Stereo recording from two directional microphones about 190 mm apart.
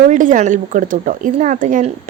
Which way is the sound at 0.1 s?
40° right (ahead or behind).